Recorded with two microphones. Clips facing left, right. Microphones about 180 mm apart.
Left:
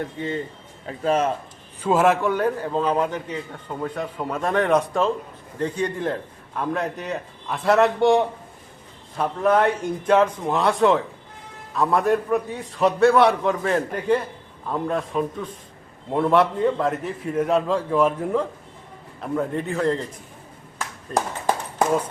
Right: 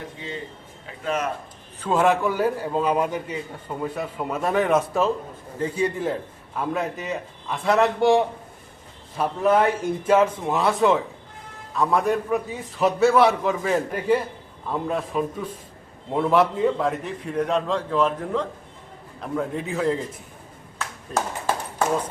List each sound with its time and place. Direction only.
0.9 s a man's voice: 35° left (ahead or behind)
1.8 s a man's voice: 5° left (ahead or behind)
20.7 s clapping: 15° left (ahead or behind)